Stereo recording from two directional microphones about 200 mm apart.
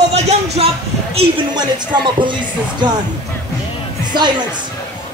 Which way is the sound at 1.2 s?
20° right (ahead or behind).